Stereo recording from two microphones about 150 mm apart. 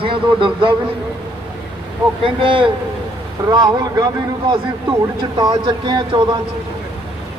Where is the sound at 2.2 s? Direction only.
35° right (ahead or behind).